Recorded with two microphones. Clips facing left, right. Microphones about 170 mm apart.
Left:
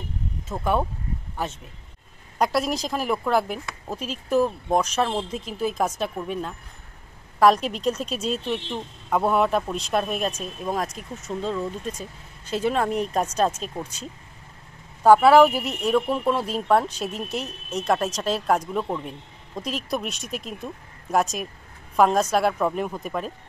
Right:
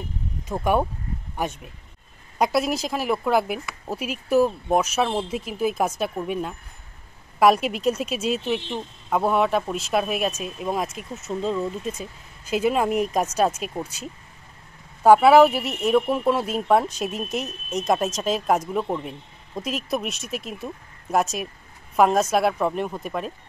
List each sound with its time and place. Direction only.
0.5 s speech: 15° right (ahead or behind)